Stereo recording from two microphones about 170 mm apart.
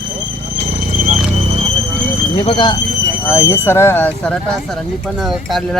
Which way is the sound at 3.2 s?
15° left (ahead or behind).